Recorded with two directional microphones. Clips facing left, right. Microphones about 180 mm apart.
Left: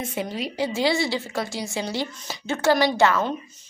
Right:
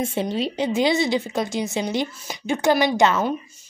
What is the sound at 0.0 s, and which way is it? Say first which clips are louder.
A woman's voice: right 5 dB; 25° right (ahead or behind).